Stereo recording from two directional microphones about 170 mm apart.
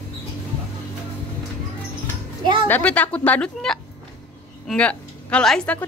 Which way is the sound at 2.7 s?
10° left (ahead or behind).